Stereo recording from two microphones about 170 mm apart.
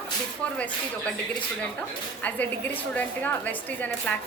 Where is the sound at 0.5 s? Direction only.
10° left (ahead or behind).